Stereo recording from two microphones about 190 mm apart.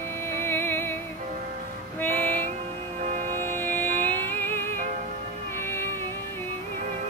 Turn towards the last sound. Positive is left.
turn(degrees=10)  # may be behind; listen again after turning